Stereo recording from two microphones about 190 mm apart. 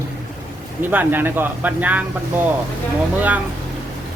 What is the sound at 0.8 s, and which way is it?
Speech, 10° right (ahead or behind).